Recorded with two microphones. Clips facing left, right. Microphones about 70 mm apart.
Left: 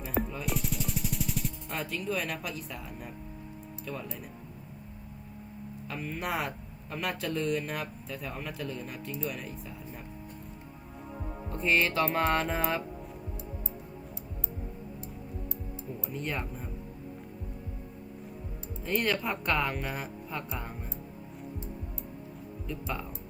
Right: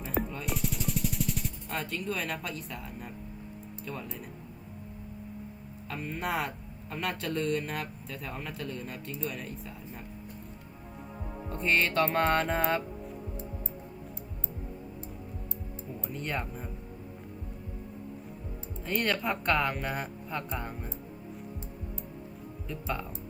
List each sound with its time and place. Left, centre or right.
0.2 s music: centre
5.9 s speech: centre
11.4 s speech: centre
16.0 s speech: centre
18.8 s speech: centre
22.6 s speech: centre